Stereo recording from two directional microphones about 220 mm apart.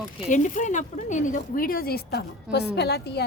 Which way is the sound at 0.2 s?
35° left (ahead or behind).